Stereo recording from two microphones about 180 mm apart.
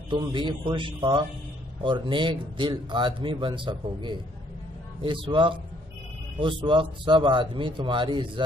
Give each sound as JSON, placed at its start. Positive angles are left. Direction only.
{"t": 0.1, "sound": "speech", "side_deg": -25}
{"t": 6.6, "sound": "speech", "side_deg": -25}